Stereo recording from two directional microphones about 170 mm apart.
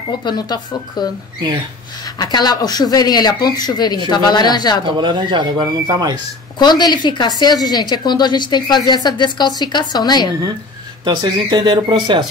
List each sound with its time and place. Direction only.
0.2 s a woman's voice: 25° left (ahead or behind)
2.0 s a woman's voice: 25° left (ahead or behind)
4.8 s speech: 30° right (ahead or behind)
6.6 s a woman's voice: 25° left (ahead or behind)
11.1 s speech: 25° right (ahead or behind)